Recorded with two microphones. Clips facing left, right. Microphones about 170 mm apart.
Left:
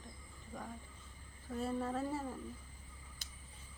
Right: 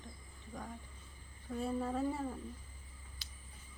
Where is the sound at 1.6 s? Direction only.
Centre (ahead or behind).